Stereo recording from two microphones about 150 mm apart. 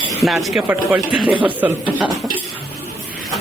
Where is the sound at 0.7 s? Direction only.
10° right (ahead or behind).